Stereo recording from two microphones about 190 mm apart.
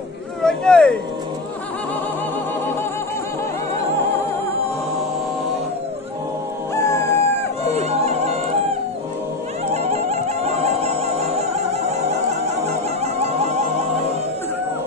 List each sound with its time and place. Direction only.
0.4 s a sound: 5° left (ahead or behind)
6.7 s music: 15° left (ahead or behind)
7.7 s music: 35° right (ahead or behind)
9.8 s music: 35° right (ahead or behind)